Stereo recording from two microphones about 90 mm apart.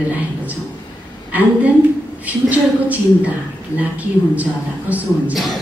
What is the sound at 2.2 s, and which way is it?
A woman's voice, 15° right (ahead or behind).